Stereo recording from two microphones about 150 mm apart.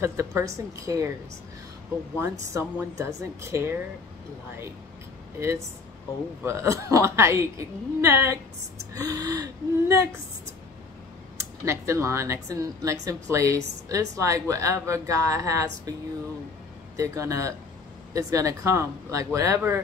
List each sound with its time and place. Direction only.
0.0 s a woman's voice: 20° right (ahead or behind)
2.5 s a woman's voice: 20° right (ahead or behind)
5.4 s a woman's voice: 20° right (ahead or behind)
16.9 s a woman's voice: 20° right (ahead or behind)